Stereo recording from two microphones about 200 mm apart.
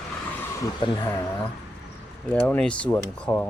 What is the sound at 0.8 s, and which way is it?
Speech, 25° left (ahead or behind).